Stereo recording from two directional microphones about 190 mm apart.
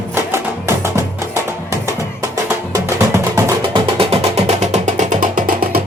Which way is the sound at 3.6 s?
25° right (ahead or behind).